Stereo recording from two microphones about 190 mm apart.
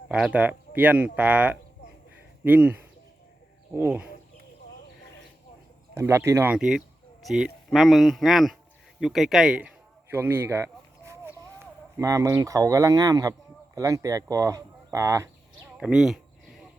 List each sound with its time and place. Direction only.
0.1 s speech: 5° right (ahead or behind)
3.8 s speech: 10° right (ahead or behind)
5.9 s speech: 15° right (ahead or behind)
9.0 s a sound: centre (ahead or behind)
11.6 s speech: 15° right (ahead or behind)
15.8 s a sound: 5° right (ahead or behind)